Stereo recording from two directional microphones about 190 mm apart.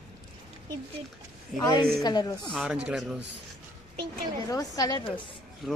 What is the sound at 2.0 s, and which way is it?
Speech, 20° left (ahead or behind).